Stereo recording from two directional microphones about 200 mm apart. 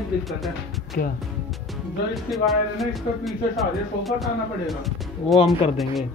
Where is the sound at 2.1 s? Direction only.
Centre (ahead or behind).